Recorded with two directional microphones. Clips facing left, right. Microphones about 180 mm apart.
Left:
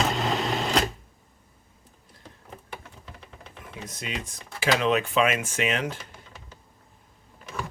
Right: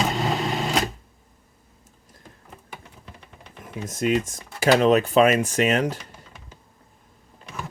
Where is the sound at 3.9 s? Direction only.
50° right (ahead or behind).